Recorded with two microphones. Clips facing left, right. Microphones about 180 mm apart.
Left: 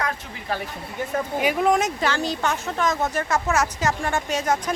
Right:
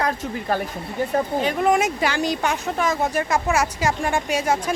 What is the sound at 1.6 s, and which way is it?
Speech, 10° right (ahead or behind).